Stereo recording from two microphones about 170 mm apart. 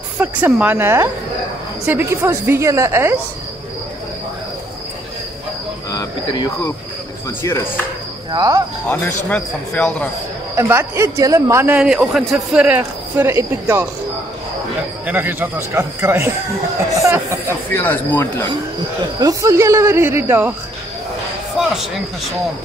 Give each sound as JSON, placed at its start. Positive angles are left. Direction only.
{"t": 0.2, "sound": "a man's voice", "side_deg": -10}
{"t": 5.9, "sound": "speech", "side_deg": 25}
{"t": 8.3, "sound": "cricket", "side_deg": -20}
{"t": 9.3, "sound": "speech", "side_deg": 5}
{"t": 10.5, "sound": "a man's voice", "side_deg": -15}
{"t": 15.0, "sound": "a man's voice", "side_deg": -10}
{"t": 17.6, "sound": "speech", "side_deg": 10}
{"t": 19.1, "sound": "a man's voice", "side_deg": -20}